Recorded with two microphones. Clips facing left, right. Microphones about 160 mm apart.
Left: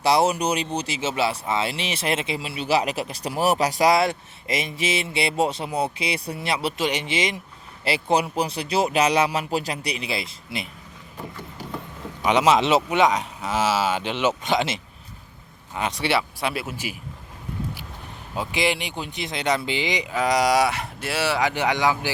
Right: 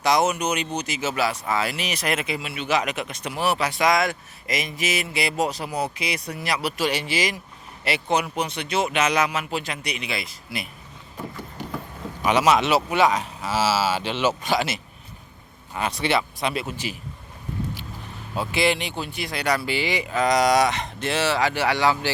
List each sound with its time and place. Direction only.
0.0 s speech: 30° left (ahead or behind)
12.2 s speech: 20° left (ahead or behind)
18.3 s speech: 15° left (ahead or behind)